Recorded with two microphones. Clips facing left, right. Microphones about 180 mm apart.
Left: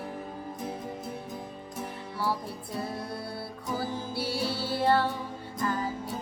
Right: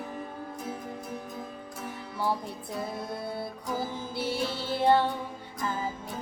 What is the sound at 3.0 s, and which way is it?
Music, 20° right (ahead or behind).